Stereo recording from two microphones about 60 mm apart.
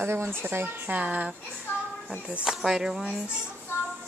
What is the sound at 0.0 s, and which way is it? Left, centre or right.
Speech, right.